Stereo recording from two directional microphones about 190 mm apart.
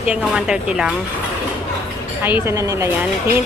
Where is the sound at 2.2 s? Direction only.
10° right (ahead or behind).